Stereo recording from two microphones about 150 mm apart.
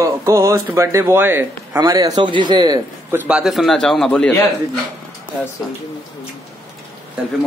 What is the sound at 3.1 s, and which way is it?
A man's voice, 5° right (ahead or behind).